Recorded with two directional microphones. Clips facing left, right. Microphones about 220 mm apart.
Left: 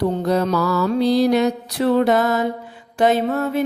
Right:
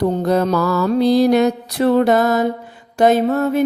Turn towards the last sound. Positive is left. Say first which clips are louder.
# right 4 dB
turn(degrees=-45)  # may be behind; listen again after turning